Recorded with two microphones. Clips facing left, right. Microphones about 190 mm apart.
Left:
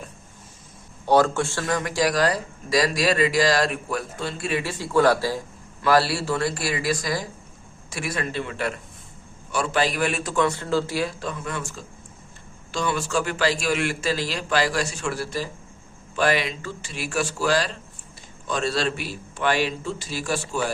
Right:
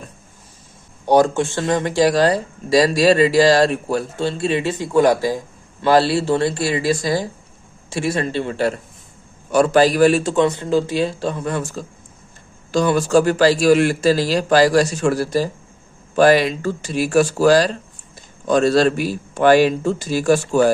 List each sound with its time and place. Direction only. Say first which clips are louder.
1.0 s a man's voice: right 4 dB; 15° right (ahead or behind); by 20.7 s 45° right (ahead or behind)